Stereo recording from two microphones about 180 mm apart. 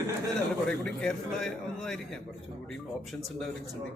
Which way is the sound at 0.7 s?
5° left (ahead or behind).